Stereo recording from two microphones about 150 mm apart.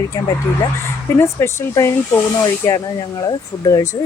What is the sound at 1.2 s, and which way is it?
A woman's voice, 20° left (ahead or behind).